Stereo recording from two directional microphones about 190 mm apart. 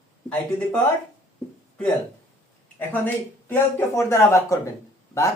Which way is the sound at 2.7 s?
10° left (ahead or behind).